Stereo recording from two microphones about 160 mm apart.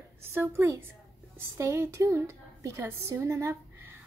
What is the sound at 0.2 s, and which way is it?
A woman's voice, 15° right (ahead or behind).